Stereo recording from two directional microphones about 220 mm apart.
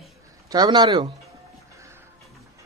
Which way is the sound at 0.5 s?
20° right (ahead or behind).